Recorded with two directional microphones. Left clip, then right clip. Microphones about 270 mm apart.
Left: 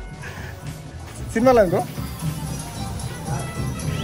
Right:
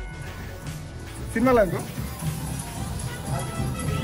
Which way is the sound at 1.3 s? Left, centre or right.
Centre.